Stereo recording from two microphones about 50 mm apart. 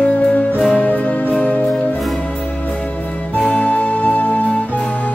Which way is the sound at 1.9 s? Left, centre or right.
Centre.